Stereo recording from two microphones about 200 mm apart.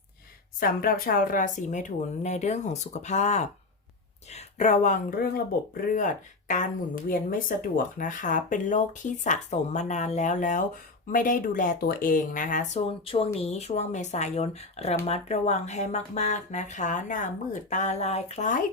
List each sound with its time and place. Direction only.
0.6 s speech: 45° left (ahead or behind)